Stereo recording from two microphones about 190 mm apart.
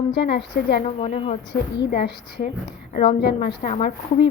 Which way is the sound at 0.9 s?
30° left (ahead or behind).